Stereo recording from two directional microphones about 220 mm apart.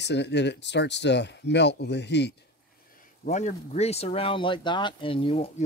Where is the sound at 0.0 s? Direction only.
50° left (ahead or behind).